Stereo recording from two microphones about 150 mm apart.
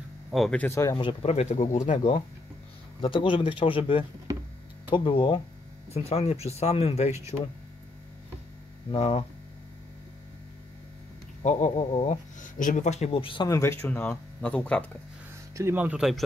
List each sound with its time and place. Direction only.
0.3 s speech: centre (ahead or behind)
0.6 s speech: 20° left (ahead or behind)
0.9 s speech: 40° left (ahead or behind); by 2.1 s 55° left (ahead or behind)
3.0 s speech: 35° left (ahead or behind)
8.9 s speech: 45° left (ahead or behind)
11.4 s speech: 50° left (ahead or behind)
13.5 s speech: 20° left (ahead or behind)
15.5 s speech: 15° right (ahead or behind)